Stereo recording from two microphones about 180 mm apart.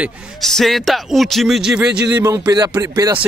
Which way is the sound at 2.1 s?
20° right (ahead or behind).